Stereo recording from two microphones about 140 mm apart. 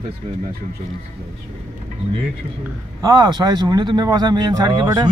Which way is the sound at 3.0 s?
30° right (ahead or behind).